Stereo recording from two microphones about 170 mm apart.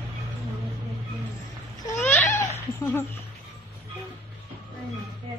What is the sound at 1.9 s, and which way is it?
Cat, 15° left (ahead or behind).